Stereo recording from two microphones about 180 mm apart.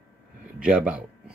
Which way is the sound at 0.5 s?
5° right (ahead or behind).